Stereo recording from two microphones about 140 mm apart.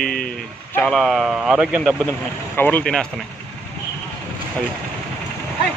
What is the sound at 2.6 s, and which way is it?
Speech, 15° left (ahead or behind).